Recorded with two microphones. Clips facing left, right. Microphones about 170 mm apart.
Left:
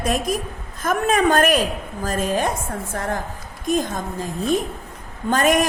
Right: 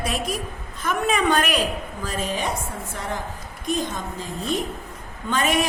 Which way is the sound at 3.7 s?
45° left (ahead or behind).